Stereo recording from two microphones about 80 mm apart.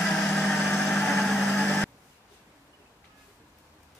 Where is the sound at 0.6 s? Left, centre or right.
Left.